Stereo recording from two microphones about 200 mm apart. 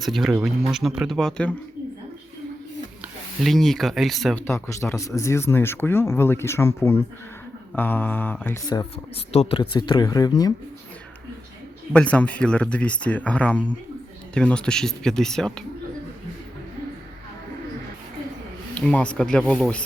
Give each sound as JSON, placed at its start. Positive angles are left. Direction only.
{"t": 0.0, "sound": "speech", "side_deg": 0}
{"t": 3.4, "sound": "speech", "side_deg": 0}
{"t": 4.4, "sound": "speech", "side_deg": 15}
{"t": 9.3, "sound": "speech", "side_deg": 30}
{"t": 11.9, "sound": "speech", "side_deg": 5}
{"t": 18.7, "sound": "speech", "side_deg": 5}